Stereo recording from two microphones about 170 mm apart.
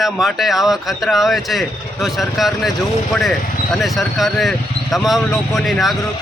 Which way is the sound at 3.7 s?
Centre (ahead or behind).